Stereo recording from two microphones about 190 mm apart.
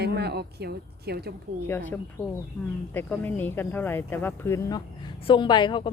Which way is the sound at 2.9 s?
10° left (ahead or behind).